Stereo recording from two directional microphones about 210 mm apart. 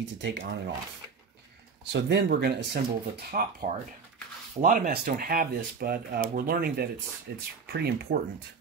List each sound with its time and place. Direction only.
0.2 s speech: 60° right (ahead or behind)
1.9 s speech: 55° right (ahead or behind)